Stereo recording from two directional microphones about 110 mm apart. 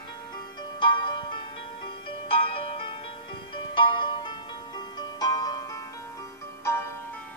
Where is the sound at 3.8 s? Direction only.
45° left (ahead or behind); by 7.2 s 25° left (ahead or behind).